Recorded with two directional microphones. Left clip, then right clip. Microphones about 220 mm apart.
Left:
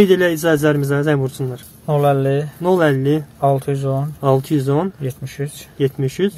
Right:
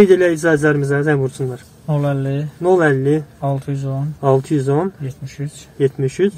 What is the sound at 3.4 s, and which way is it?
Speech, 50° left (ahead or behind).